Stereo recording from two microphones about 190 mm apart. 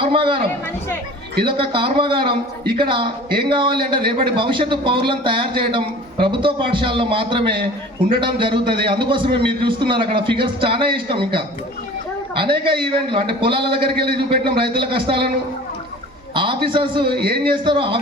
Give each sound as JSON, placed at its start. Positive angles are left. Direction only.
{"t": 0.0, "sound": "a man's voice", "side_deg": -25}
{"t": 1.5, "sound": "a man's voice", "side_deg": -25}
{"t": 16.3, "sound": "a man's voice", "side_deg": -25}
{"t": 17.1, "sound": "speech", "side_deg": -55}
{"t": 17.5, "sound": "a man's voice", "side_deg": -25}